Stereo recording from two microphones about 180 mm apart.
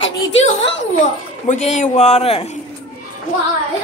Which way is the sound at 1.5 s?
40° left (ahead or behind).